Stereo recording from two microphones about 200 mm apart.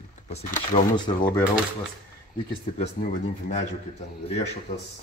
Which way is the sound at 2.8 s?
35° left (ahead or behind).